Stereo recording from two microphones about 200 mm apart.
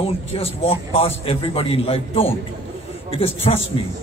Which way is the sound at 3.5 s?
30° left (ahead or behind).